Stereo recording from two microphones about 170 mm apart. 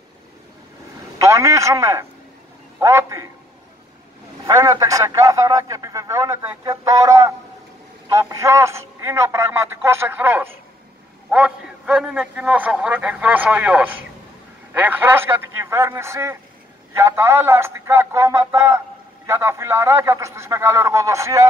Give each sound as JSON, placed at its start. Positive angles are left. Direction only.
{"t": 1.1, "sound": "a man's voice", "side_deg": -20}
{"t": 4.5, "sound": "a man's voice", "side_deg": -20}